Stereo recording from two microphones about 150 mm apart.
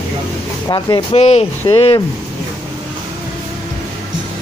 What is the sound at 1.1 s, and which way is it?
Speech, 45° left (ahead or behind).